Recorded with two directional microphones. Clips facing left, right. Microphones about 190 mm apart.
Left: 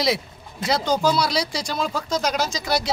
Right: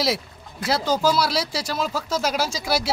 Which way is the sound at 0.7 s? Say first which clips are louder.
Even; 5° right (ahead or behind).